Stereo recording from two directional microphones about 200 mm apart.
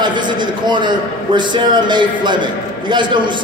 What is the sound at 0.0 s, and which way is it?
A man's voice, 25° right (ahead or behind).